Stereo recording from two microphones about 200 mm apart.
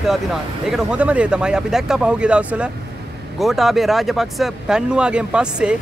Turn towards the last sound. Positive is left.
turn(degrees=-5)  # may be behind; listen again after turning